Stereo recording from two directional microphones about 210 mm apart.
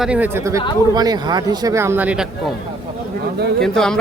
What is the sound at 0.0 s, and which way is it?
Speech, 5° right (ahead or behind).